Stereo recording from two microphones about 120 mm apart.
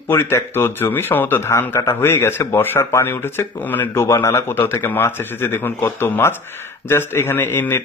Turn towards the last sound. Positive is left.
turn(degrees=15)  # may be behind; listen again after turning